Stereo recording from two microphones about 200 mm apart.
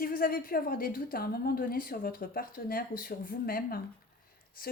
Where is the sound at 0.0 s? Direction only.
45° left (ahead or behind).